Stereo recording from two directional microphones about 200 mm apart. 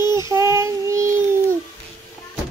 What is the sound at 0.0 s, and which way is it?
Child singing, 20° left (ahead or behind).